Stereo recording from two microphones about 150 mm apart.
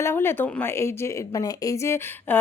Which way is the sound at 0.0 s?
15° left (ahead or behind).